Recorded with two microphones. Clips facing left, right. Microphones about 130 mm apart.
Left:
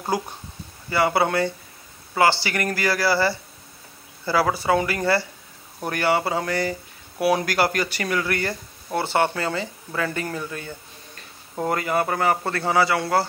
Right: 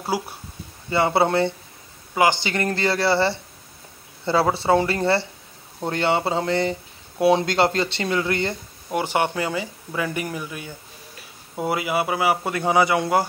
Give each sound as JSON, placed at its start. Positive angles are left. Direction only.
{"t": 0.1, "sound": "speech", "side_deg": -10}
{"t": 0.8, "sound": "a man's voice", "side_deg": -25}